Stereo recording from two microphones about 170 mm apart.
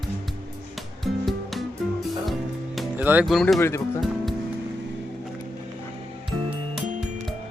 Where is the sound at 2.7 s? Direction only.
10° right (ahead or behind).